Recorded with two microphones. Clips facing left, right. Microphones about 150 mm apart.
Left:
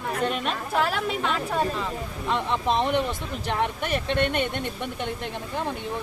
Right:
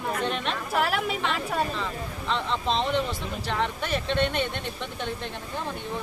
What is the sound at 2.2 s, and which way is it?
Speech, 15° left (ahead or behind).